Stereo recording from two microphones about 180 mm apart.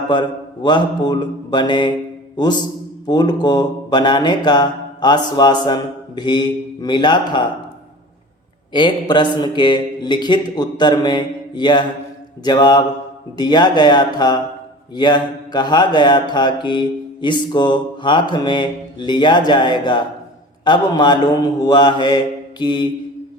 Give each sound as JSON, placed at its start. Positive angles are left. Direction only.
{"t": 0.1, "sound": "mantra", "side_deg": 25}
{"t": 8.7, "sound": "mantra", "side_deg": 25}